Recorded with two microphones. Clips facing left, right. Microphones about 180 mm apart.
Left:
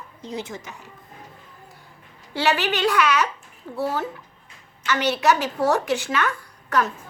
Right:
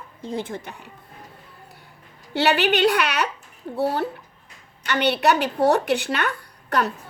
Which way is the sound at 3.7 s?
30° right (ahead or behind).